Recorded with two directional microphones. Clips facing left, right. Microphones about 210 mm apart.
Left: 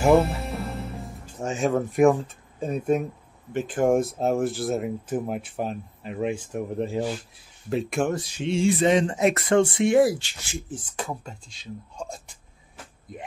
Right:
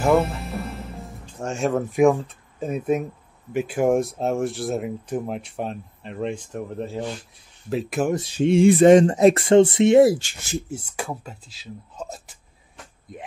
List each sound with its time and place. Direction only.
1.2 s speech: centre (ahead or behind)
7.7 s speech: centre (ahead or behind)
8.1 s speech: 25° right (ahead or behind)
8.5 s speech: 55° right (ahead or behind); by 10.1 s 25° right (ahead or behind)
10.1 s speech: 40° right (ahead or behind)
10.7 s speech: 10° right (ahead or behind)